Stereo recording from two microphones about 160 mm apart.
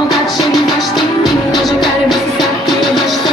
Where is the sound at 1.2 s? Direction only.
Centre (ahead or behind).